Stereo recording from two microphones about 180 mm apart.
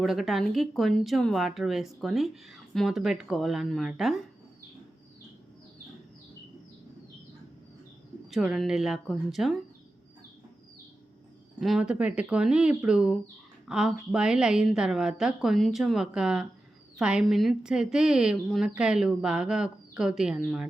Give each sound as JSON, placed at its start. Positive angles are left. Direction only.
{"t": 0.0, "sound": "speech", "side_deg": 0}
{"t": 8.3, "sound": "speech", "side_deg": 0}
{"t": 11.6, "sound": "speech", "side_deg": -5}